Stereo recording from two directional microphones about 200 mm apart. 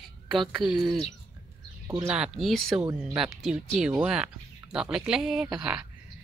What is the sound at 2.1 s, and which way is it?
Speech, 5° right (ahead or behind).